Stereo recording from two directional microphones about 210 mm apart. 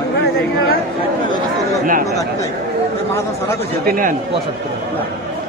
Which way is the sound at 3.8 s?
40° right (ahead or behind).